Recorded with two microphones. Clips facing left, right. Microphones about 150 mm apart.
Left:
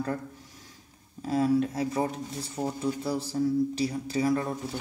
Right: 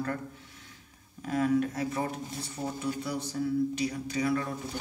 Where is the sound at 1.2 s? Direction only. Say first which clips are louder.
Left 2 dB; 30° left (ahead or behind).